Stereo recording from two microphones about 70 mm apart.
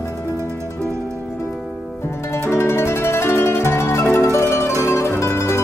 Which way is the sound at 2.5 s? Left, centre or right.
Left.